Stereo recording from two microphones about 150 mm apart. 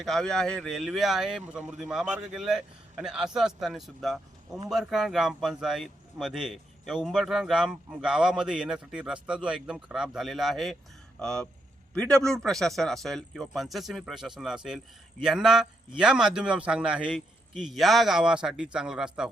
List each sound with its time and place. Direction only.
0.0 s a man's voice: centre (ahead or behind)